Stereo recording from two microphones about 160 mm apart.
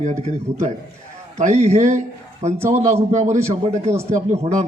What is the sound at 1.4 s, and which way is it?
A man's voice, 45° right (ahead or behind).